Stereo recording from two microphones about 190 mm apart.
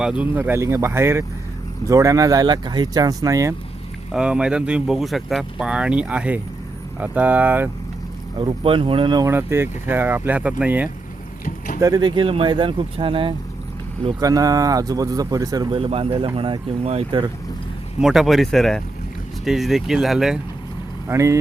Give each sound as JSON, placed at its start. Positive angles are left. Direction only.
{"t": 0.0, "sound": "speech", "side_deg": -5}
{"t": 4.1, "sound": "speech", "side_deg": -5}
{"t": 8.4, "sound": "speech", "side_deg": -25}
{"t": 11.4, "sound": "a sound", "side_deg": 45}
{"t": 11.8, "sound": "speech", "side_deg": -20}
{"t": 15.8, "sound": "speech", "side_deg": -30}
{"t": 18.0, "sound": "speech", "side_deg": 0}
{"t": 21.1, "sound": "speech", "side_deg": -15}